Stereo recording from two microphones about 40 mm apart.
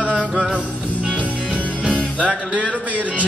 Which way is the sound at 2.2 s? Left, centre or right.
Right.